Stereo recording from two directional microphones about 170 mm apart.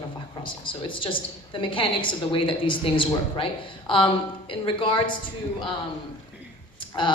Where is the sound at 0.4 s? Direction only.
30° left (ahead or behind).